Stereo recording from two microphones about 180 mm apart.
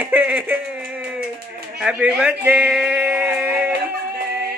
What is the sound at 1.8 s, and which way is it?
Speech, 5° right (ahead or behind).